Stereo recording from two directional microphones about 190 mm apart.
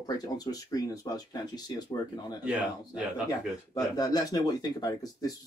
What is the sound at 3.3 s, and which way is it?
Speech, 20° left (ahead or behind).